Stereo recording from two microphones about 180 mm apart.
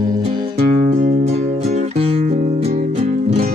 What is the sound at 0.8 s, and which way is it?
Music, 45° right (ahead or behind).